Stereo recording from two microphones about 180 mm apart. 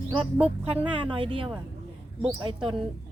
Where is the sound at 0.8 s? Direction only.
30° right (ahead or behind).